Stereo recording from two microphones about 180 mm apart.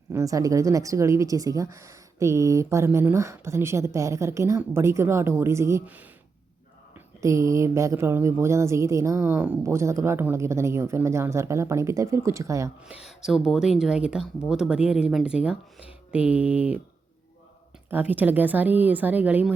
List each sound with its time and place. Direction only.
0.1 s a woman's voice: 20° right (ahead or behind)
12.8 s a woman's voice: 5° right (ahead or behind)
17.8 s a woman's voice: 10° right (ahead or behind)